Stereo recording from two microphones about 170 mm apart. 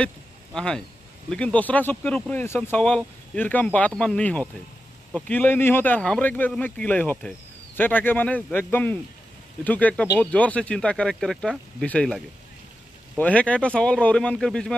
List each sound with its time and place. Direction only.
0.6 s speech: 5° left (ahead or behind)
13.2 s speech: 10° left (ahead or behind)